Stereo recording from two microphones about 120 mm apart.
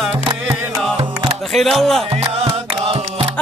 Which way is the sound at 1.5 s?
Centre (ahead or behind).